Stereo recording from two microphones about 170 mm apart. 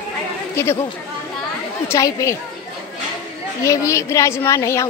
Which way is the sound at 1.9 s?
20° left (ahead or behind).